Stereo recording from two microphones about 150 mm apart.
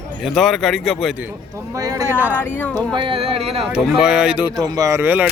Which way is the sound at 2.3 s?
15° left (ahead or behind).